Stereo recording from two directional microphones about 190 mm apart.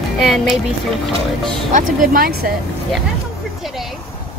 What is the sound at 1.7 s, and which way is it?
Speech, 50° right (ahead or behind).